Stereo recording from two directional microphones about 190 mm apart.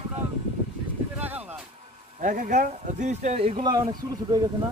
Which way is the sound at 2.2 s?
45° right (ahead or behind).